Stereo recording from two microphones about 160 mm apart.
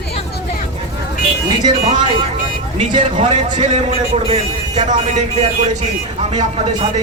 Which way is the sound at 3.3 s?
45° right (ahead or behind).